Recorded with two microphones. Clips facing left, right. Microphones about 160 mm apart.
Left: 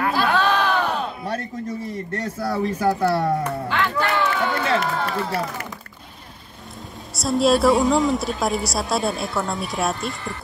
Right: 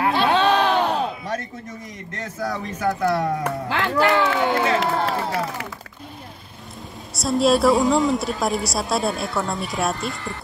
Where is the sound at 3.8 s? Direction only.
35° right (ahead or behind).